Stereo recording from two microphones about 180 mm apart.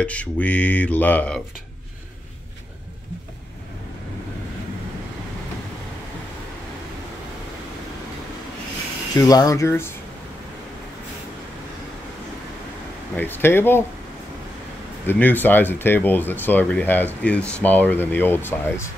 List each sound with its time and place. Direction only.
0.0 s speech: 5° left (ahead or behind)
9.1 s speech: 20° left (ahead or behind)
13.1 s speech: 10° left (ahead or behind)
15.0 s speech: 10° left (ahead or behind)